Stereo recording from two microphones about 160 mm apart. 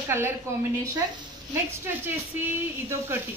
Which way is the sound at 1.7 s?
15° right (ahead or behind).